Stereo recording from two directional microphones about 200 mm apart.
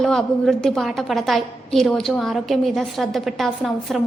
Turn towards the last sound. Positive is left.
turn(degrees=0)  # may be behind; listen again after turning